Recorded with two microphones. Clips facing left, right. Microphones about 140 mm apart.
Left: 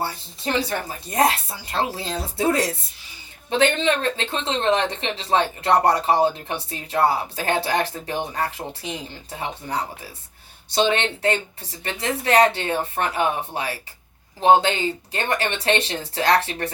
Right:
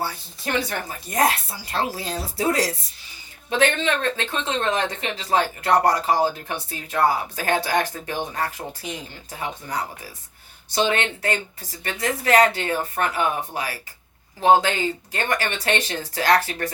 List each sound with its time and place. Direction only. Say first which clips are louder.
0.0 s speech: left 1 dB; 30° left (ahead or behind)